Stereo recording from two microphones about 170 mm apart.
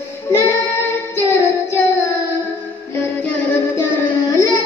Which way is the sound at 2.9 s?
10° left (ahead or behind).